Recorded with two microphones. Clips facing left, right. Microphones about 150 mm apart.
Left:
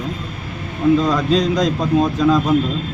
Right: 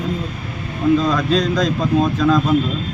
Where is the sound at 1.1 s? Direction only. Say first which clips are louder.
Left 1 dB; 15° left (ahead or behind).